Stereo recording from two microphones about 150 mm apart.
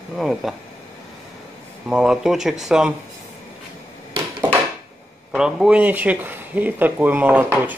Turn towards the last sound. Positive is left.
turn(degrees=-10)  # may be behind; listen again after turning